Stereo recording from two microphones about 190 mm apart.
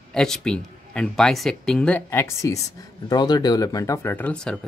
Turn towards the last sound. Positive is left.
turn(degrees=5)  # may be behind; listen again after turning